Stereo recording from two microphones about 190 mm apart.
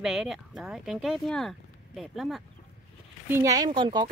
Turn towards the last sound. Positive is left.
turn(degrees=-25)  # may be behind; listen again after turning